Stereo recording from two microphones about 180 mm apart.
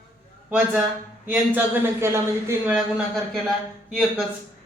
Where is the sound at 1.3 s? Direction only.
10° right (ahead or behind).